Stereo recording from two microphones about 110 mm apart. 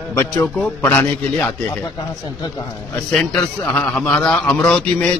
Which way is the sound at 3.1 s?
10° left (ahead or behind).